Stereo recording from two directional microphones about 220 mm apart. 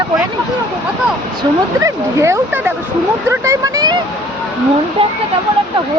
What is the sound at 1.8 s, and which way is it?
Speech, 15° right (ahead or behind).